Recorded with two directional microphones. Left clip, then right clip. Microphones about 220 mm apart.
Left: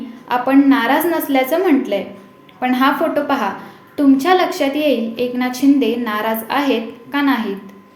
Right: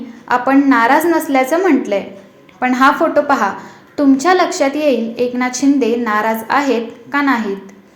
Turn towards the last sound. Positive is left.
turn(degrees=-20)  # may be behind; listen again after turning